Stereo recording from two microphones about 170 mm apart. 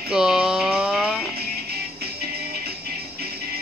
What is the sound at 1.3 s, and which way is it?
Music, 65° right (ahead or behind).